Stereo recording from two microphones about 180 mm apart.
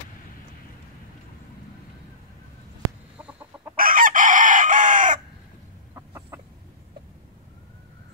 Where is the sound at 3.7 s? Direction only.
50° right (ahead or behind).